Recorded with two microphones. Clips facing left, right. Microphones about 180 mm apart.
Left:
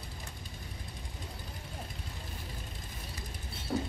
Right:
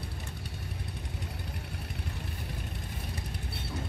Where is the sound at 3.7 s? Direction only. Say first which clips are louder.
Left 7 dB; 55° left (ahead or behind).